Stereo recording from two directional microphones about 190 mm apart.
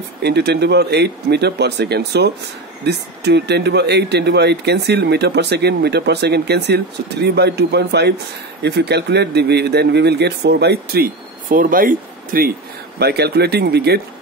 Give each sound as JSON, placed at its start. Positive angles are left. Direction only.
{"t": 0.2, "sound": "speech", "side_deg": -60}